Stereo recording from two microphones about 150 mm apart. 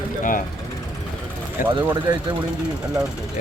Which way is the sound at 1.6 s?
65° left (ahead or behind).